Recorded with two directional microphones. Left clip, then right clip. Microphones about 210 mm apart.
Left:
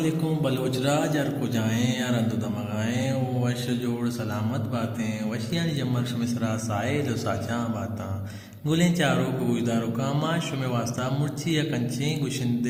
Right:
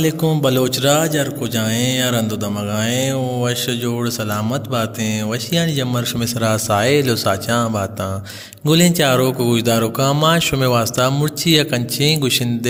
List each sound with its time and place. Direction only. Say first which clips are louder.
0.0 s speech: right 10 dB; 45° right (ahead or behind)